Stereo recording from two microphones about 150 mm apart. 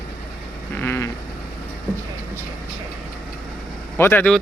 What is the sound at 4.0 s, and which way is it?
Speech, 15° left (ahead or behind).